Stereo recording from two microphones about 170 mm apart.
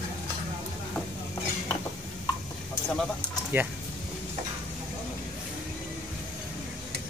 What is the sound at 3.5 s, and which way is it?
Speech, 15° right (ahead or behind).